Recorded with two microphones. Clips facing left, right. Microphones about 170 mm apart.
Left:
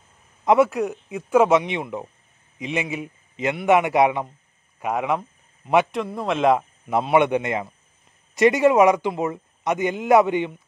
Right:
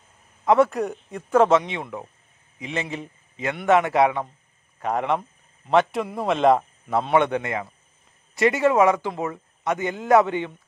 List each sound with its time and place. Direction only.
0.5 s a man's voice: 5° left (ahead or behind)
1.7 s a man's voice: 20° left (ahead or behind); by 6.6 s centre (ahead or behind)
6.9 s a man's voice: 15° left (ahead or behind)